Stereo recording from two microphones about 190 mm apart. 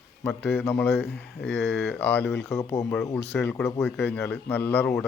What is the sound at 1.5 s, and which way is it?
Speech, 65° left (ahead or behind).